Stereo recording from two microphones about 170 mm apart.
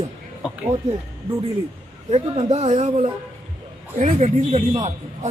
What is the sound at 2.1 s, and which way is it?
Speech, 40° right (ahead or behind).